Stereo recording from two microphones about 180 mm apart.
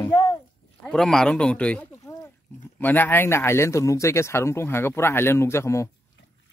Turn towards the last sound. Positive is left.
turn(degrees=15)  # may be behind; listen again after turning